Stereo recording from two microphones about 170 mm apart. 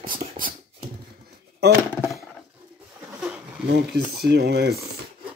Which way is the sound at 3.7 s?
65° right (ahead or behind).